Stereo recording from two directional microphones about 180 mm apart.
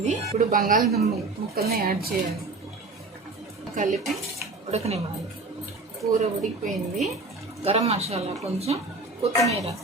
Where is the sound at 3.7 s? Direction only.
40° right (ahead or behind).